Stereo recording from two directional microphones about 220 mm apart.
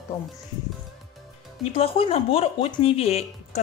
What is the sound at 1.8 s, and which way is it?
A woman's voice, 25° left (ahead or behind).